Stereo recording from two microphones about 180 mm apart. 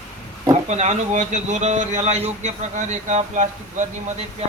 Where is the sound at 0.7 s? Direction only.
40° right (ahead or behind).